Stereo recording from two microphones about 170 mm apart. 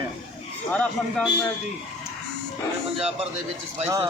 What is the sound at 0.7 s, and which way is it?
Speech, 10° left (ahead or behind).